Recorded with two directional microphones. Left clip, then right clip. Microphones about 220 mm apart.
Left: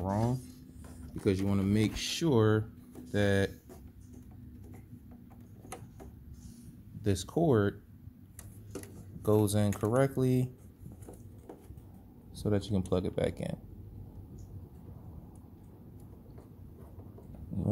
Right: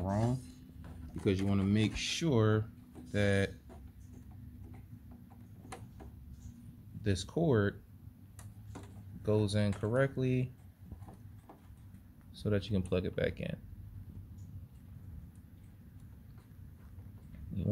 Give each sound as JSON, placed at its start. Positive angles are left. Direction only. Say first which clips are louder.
{"t": 0.0, "sound": "rub", "louder": "left 2 dB", "side_deg": 15}
{"t": 1.3, "sound": "speech", "louder": "left 1 dB", "side_deg": 20}
{"t": 7.0, "sound": "speech", "louder": "left 4 dB", "side_deg": 10}
{"t": 9.2, "sound": "speech", "louder": "left 4 dB", "side_deg": 10}
{"t": 12.4, "sound": "speech", "louder": "left 2 dB", "side_deg": 0}